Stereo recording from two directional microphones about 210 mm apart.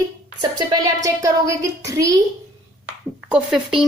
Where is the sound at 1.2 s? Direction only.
15° right (ahead or behind).